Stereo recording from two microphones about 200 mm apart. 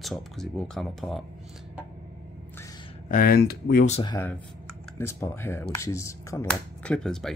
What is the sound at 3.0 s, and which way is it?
Speech, 45° left (ahead or behind).